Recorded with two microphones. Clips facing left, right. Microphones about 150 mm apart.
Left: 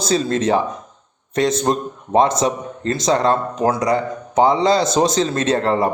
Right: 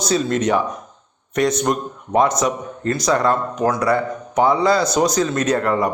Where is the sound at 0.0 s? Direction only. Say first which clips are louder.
Left 1 dB; 30° left (ahead or behind).